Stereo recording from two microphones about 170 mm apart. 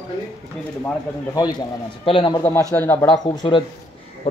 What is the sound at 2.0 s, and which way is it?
Speech, 30° left (ahead or behind).